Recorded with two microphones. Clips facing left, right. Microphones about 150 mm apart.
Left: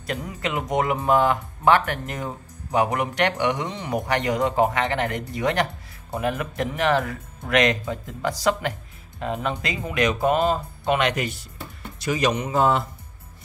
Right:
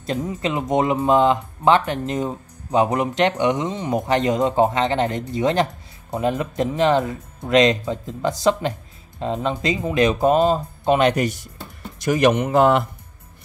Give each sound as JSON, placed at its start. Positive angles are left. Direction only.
{"t": 0.0, "sound": "speech", "side_deg": -25}
{"t": 12.0, "sound": "a man's voice", "side_deg": -50}